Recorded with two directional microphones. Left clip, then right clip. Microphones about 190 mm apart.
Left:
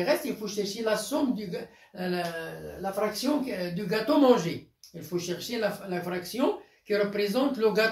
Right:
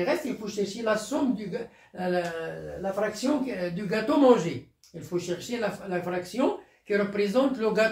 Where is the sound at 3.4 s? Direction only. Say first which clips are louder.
Right 1 dB; 15° right (ahead or behind).